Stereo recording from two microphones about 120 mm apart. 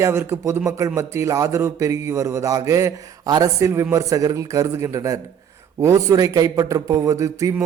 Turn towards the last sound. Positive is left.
turn(degrees=-25)  # may be behind; listen again after turning